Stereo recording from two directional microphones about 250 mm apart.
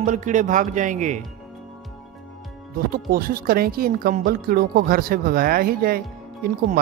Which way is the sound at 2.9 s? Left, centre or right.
Right.